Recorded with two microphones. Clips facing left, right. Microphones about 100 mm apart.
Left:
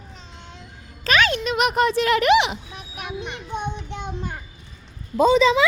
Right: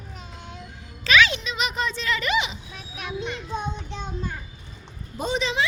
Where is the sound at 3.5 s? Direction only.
65° left (ahead or behind).